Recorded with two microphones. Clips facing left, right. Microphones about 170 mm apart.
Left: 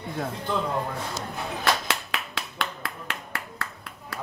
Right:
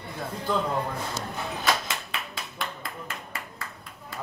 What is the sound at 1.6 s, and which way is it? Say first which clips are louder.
Clapping: left 2 dB; 75° left (ahead or behind).